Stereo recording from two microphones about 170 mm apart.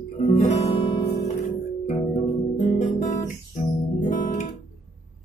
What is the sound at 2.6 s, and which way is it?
Guitar, 45° left (ahead or behind).